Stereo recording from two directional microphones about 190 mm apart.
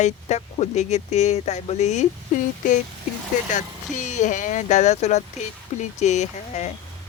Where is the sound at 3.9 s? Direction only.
40° left (ahead or behind).